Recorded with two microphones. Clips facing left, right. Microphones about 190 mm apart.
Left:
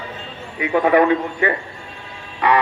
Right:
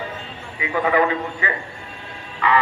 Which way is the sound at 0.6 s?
55° left (ahead or behind).